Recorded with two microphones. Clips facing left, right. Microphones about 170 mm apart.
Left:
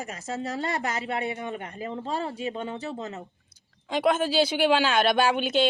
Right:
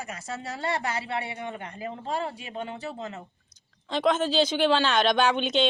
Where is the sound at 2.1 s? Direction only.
40° left (ahead or behind).